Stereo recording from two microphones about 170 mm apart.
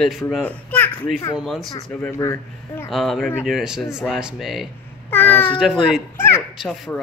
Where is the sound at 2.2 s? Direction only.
20° left (ahead or behind).